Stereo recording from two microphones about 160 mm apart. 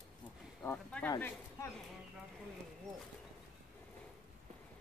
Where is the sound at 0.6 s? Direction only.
10° left (ahead or behind).